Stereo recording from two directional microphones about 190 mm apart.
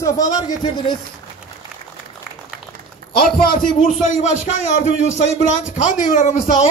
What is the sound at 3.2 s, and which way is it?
Speech, 50° left (ahead or behind).